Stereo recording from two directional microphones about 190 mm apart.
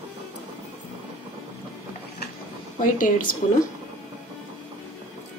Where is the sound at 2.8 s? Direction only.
45° left (ahead or behind).